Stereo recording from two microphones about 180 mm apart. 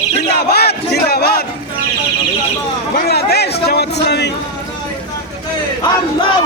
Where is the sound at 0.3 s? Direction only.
65° left (ahead or behind).